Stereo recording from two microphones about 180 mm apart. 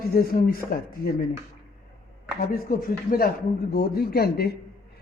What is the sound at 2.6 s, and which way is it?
Speech, 50° left (ahead or behind).